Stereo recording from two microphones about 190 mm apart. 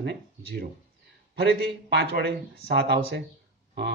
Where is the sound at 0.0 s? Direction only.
55° right (ahead or behind).